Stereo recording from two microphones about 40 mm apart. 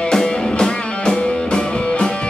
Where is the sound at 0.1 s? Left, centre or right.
Centre.